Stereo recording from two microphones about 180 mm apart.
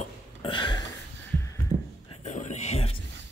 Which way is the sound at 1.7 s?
45° right (ahead or behind).